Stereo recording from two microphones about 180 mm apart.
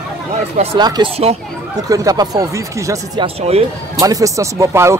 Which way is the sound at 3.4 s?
35° right (ahead or behind).